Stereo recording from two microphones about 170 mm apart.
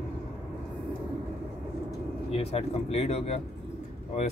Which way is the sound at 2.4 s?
35° left (ahead or behind).